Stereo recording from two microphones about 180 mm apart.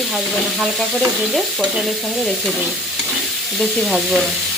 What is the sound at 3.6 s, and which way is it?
Frying, centre (ahead or behind).